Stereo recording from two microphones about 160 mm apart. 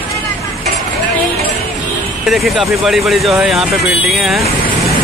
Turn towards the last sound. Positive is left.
turn(degrees=0)  # may be behind; listen again after turning